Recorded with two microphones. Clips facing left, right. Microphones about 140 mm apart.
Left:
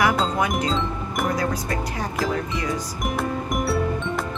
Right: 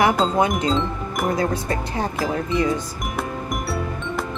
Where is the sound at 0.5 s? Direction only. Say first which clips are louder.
Right 2 dB; centre (ahead or behind).